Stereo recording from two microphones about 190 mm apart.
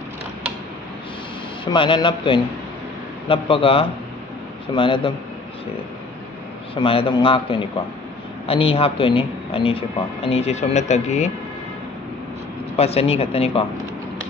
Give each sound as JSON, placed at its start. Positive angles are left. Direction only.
{"t": 1.6, "sound": "speech", "side_deg": 25}
{"t": 6.7, "sound": "speech", "side_deg": 30}
{"t": 12.7, "sound": "speech", "side_deg": 35}